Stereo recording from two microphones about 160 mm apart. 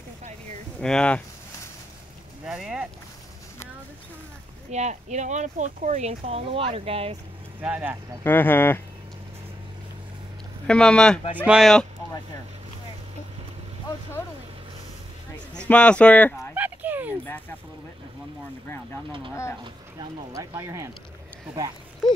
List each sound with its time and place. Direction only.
0.7 s speech: 5° left (ahead or behind)
2.4 s a sound: 5° right (ahead or behind)
4.6 s speech: 45° right (ahead or behind)
7.6 s speech: 10° right (ahead or behind)
8.2 s speech: 10° left (ahead or behind)
10.7 s speech: 5° left (ahead or behind)
15.5 s speech: 10° left (ahead or behind)
16.5 s a sound: 10° right (ahead or behind)
19.6 s speech: 25° right (ahead or behind)